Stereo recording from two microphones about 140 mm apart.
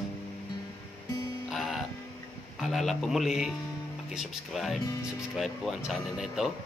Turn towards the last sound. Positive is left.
turn(degrees=0)  # may be behind; listen again after turning